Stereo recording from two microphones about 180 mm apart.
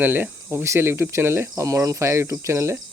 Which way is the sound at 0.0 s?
10° right (ahead or behind).